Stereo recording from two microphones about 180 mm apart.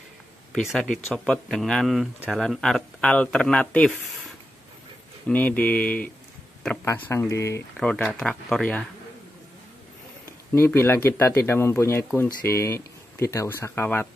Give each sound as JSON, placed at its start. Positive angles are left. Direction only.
{"t": 0.5, "sound": "speech", "side_deg": 0}
{"t": 5.2, "sound": "speech", "side_deg": 10}
{"t": 7.9, "sound": "speech", "side_deg": 5}
{"t": 10.5, "sound": "speech", "side_deg": 15}